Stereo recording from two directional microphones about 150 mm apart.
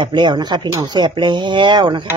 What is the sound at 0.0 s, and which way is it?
Speech, 30° right (ahead or behind).